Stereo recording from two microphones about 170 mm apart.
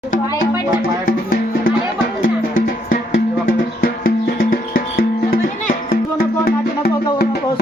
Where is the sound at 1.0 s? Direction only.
60° left (ahead or behind).